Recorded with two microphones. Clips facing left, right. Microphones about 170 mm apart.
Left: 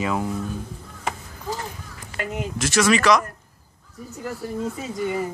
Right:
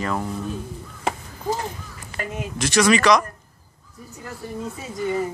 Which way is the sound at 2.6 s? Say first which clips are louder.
Right 2 dB; centre (ahead or behind).